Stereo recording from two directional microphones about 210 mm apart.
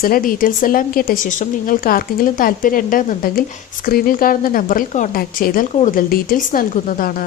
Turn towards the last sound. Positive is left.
turn(degrees=40)  # may be behind; listen again after turning